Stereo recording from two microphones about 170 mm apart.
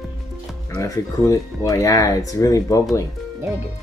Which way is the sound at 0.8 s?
20° left (ahead or behind).